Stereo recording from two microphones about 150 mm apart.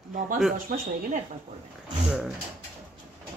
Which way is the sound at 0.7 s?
60° right (ahead or behind).